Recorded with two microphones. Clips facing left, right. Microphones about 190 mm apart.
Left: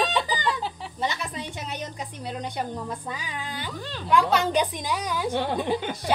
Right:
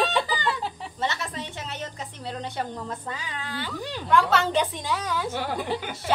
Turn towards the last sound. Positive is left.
turn(degrees=20)  # may be behind; listen again after turning